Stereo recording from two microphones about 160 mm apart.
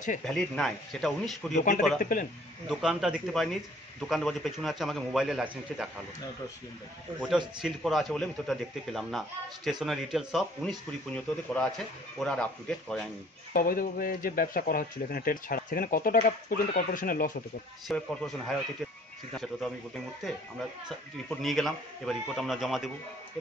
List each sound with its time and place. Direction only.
0.2 s a man's voice: 5° left (ahead or behind)
1.5 s a man's voice: 50° left (ahead or behind)
2.7 s a man's voice: 5° right (ahead or behind)
7.2 s a man's voice: 5° right (ahead or behind)
13.5 s speech: 60° left (ahead or behind)
17.8 s a man's voice: centre (ahead or behind)
21.3 s a man's voice: centre (ahead or behind)